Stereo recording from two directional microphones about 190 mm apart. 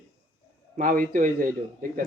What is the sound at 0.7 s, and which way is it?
A man's voice, 45° right (ahead or behind).